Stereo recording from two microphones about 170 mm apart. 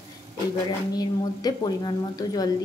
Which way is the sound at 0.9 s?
25° left (ahead or behind).